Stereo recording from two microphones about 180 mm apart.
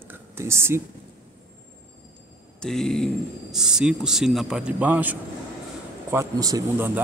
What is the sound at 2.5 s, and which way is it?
Speech, 5° left (ahead or behind).